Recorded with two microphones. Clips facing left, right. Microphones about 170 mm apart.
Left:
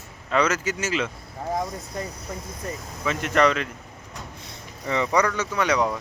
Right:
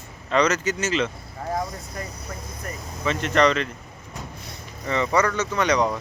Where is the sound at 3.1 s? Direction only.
5° left (ahead or behind).